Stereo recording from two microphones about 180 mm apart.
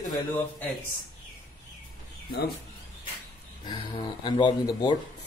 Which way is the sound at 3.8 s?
30° left (ahead or behind).